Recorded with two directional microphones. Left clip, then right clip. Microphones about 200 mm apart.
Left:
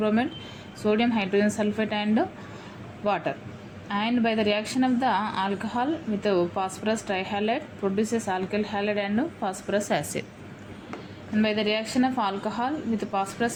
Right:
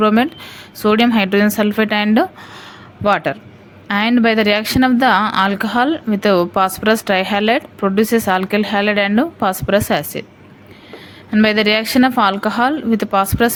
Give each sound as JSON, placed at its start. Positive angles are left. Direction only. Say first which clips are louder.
{"t": 0.0, "sound": "a woman's voice", "louder": "right 11 dB", "side_deg": -45}
{"t": 9.9, "sound": "a woman's voice", "louder": "right 9 dB", "side_deg": -30}
{"t": 11.3, "sound": "a woman's voice", "louder": "right 11 dB", "side_deg": -50}